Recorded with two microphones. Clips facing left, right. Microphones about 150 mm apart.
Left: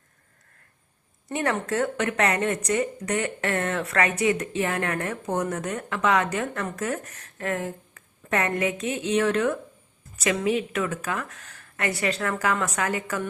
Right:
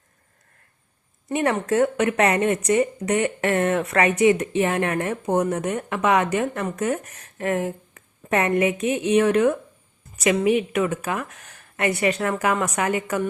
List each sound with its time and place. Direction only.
1.3 s speech: 20° right (ahead or behind)